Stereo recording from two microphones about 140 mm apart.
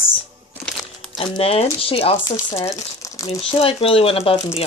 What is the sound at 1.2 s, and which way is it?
Speech, 45° left (ahead or behind).